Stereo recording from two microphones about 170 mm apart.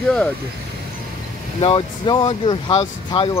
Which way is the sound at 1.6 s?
30° left (ahead or behind).